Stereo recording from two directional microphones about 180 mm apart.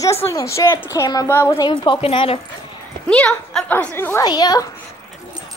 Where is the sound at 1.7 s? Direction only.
30° left (ahead or behind).